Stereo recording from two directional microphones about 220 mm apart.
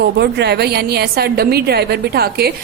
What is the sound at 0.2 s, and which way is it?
A woman's voice, 50° right (ahead or behind).